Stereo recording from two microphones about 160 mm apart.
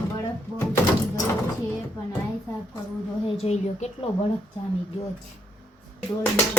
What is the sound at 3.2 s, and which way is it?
Speech, 40° left (ahead or behind).